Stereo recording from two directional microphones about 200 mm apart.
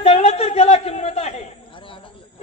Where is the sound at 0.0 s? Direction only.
30° left (ahead or behind).